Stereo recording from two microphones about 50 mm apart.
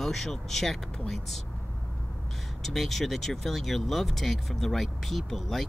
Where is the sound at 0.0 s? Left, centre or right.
Centre.